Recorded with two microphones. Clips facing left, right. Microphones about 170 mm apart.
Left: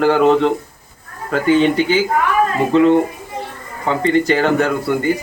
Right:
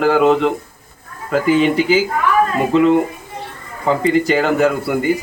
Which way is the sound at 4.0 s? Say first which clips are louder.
Left 2 dB; 5° right (ahead or behind).